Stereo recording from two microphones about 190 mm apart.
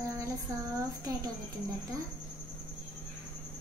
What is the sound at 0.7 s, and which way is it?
Speech, 20° right (ahead or behind).